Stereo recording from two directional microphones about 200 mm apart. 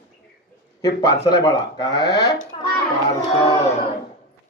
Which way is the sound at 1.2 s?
55° left (ahead or behind).